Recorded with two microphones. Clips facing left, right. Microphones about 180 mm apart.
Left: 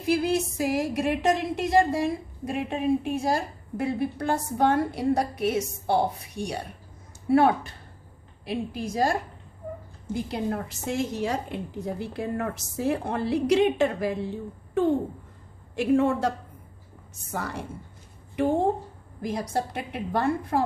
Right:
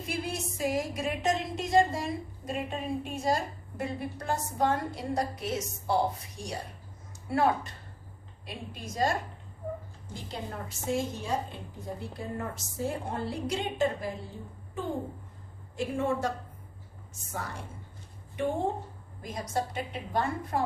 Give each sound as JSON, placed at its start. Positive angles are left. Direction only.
{"t": 0.0, "sound": "a woman's voice", "side_deg": 70}
{"t": 10.2, "sound": "a woman's voice", "side_deg": 65}
{"t": 15.7, "sound": "a woman's voice", "side_deg": 75}
{"t": 17.3, "sound": "a woman's voice", "side_deg": 70}
{"t": 19.2, "sound": "a woman's voice", "side_deg": 65}